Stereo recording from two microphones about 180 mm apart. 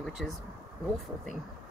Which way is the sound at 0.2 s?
Centre (ahead or behind).